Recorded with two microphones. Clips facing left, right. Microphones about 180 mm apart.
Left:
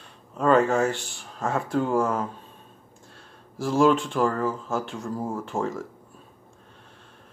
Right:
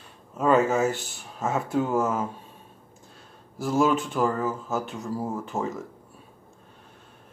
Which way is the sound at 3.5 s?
5° right (ahead or behind).